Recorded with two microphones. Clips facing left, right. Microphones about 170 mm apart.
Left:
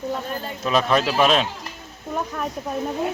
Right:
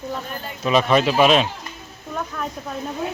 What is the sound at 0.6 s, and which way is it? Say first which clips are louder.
Speech: right 3 dB; centre (ahead or behind).